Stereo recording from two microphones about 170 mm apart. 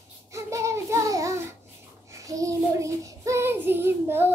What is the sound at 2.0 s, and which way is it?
Child singing, 20° right (ahead or behind).